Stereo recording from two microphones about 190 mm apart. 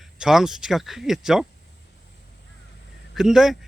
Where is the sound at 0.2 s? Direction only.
5° right (ahead or behind).